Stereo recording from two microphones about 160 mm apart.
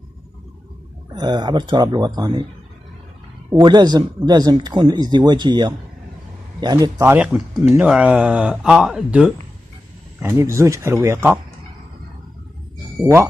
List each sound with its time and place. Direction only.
1.1 s speech: 30° right (ahead or behind)
3.4 s speech: 25° right (ahead or behind)
7.0 s speech: 10° right (ahead or behind)
10.2 s speech: 20° right (ahead or behind)
13.0 s speech: 15° right (ahead or behind)